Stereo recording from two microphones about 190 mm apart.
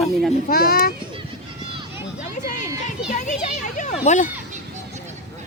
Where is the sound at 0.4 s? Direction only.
50° left (ahead or behind).